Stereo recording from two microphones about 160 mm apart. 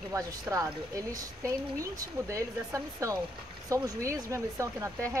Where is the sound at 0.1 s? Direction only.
20° right (ahead or behind).